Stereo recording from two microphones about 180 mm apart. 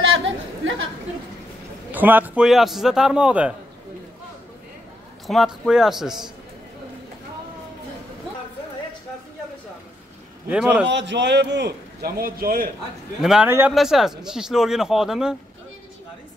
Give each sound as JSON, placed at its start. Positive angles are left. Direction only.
{"t": 0.0, "sound": "chatter", "side_deg": -90}
{"t": 1.9, "sound": "a man's voice", "side_deg": -10}
{"t": 5.2, "sound": "a man's voice", "side_deg": 0}
{"t": 10.5, "sound": "a man's voice", "side_deg": -5}
{"t": 10.9, "sound": "a man's voice", "side_deg": -80}
{"t": 13.2, "sound": "a man's voice", "side_deg": -5}